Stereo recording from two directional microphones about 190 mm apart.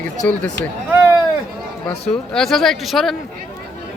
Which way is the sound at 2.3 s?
Centre (ahead or behind).